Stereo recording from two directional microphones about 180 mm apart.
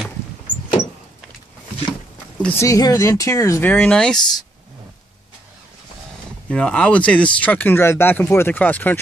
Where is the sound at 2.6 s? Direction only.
20° left (ahead or behind).